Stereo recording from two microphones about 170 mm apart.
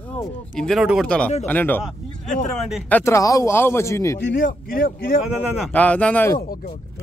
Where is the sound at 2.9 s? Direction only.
15° left (ahead or behind).